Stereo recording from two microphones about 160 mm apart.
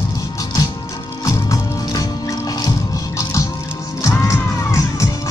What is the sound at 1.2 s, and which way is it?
Music, 20° left (ahead or behind).